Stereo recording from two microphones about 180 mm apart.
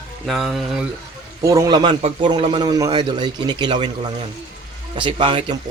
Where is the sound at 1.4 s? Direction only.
20° right (ahead or behind).